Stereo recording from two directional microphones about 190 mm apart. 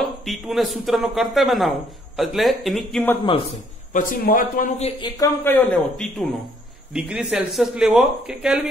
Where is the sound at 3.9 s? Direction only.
45° left (ahead or behind).